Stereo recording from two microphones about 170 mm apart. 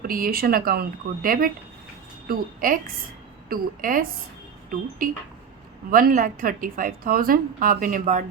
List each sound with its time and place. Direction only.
0.1 s a woman's voice: 60° right (ahead or behind)